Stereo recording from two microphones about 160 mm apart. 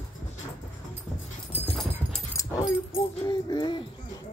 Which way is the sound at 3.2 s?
25° left (ahead or behind).